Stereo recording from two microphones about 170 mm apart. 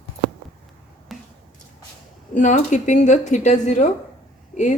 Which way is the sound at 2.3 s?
50° left (ahead or behind).